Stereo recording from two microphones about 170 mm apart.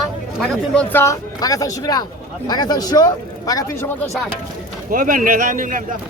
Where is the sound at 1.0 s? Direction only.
20° left (ahead or behind).